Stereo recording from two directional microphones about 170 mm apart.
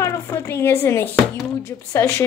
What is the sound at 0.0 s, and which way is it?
Speech, 15° left (ahead or behind).